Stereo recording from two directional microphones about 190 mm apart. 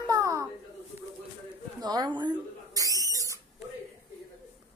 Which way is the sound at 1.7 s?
20° right (ahead or behind).